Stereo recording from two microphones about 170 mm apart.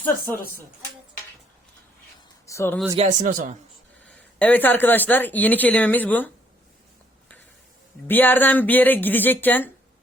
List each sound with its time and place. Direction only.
0.0 s speech: 10° left (ahead or behind)
2.5 s speech: 15° left (ahead or behind)
2.9 s speech: 40° right (ahead or behind)
4.1 s speech: 10° left (ahead or behind)
8.0 s speech: 10° left (ahead or behind)